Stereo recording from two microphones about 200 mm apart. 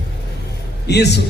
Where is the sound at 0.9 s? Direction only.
55° left (ahead or behind).